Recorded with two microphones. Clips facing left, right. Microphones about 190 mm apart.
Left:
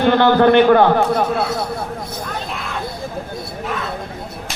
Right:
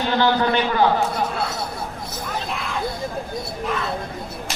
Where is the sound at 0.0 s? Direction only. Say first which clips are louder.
Left 7 dB; 60° left (ahead or behind).